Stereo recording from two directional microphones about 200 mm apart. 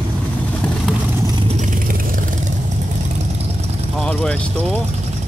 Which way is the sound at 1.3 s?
35° right (ahead or behind).